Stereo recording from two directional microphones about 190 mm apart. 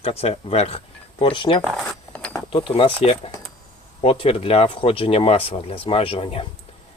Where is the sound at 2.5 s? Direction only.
30° left (ahead or behind).